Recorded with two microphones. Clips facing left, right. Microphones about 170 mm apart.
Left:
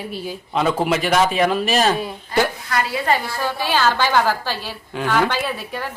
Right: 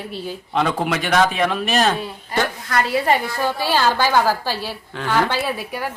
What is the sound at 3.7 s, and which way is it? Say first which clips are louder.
A woman's voice: even; 10° right (ahead or behind).